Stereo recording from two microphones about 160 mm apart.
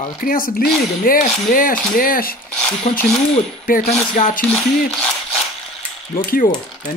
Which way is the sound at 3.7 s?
65° left (ahead or behind).